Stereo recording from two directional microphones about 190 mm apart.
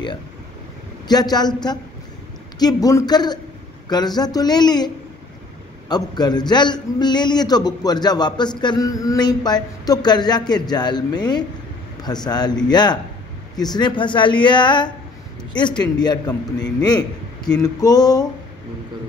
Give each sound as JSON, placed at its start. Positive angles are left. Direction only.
{"t": 1.0, "sound": "a man's voice", "side_deg": 20}
{"t": 17.5, "sound": "a man's voice", "side_deg": 20}